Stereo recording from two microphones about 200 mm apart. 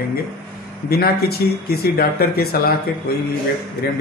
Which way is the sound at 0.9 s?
50° left (ahead or behind).